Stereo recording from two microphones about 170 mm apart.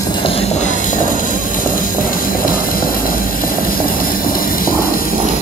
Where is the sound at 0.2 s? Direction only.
35° left (ahead or behind); by 4.7 s 55° left (ahead or behind).